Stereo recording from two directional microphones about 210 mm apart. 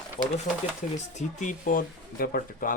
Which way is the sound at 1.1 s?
35° left (ahead or behind).